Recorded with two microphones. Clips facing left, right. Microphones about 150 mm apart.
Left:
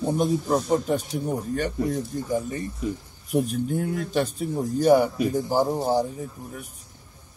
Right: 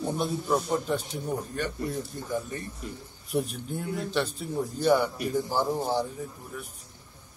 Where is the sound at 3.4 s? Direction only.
45° left (ahead or behind).